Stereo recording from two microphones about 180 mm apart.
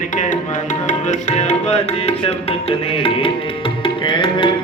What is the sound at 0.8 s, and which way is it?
Tabla, 40° left (ahead or behind).